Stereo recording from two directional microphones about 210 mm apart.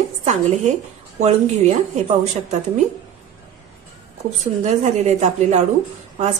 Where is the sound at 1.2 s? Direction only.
30° right (ahead or behind).